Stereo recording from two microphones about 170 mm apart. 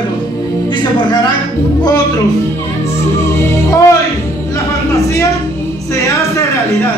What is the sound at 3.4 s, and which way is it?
Music, 15° left (ahead or behind).